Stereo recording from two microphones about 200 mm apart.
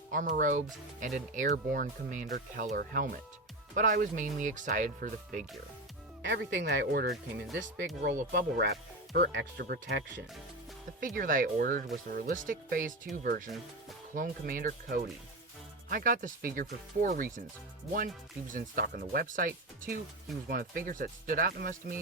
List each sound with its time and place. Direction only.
0.1 s speech: 40° right (ahead or behind)
6.2 s speech: 60° right (ahead or behind)
8.1 s speech: 50° right (ahead or behind)
11.0 s speech: 45° right (ahead or behind)